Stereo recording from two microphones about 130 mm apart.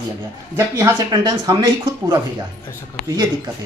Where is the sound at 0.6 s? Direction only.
20° right (ahead or behind).